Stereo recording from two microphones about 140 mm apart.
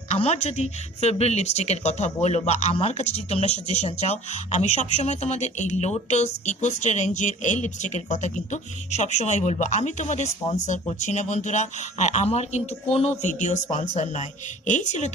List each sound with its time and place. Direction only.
0.1 s a woman's voice: 50° left (ahead or behind)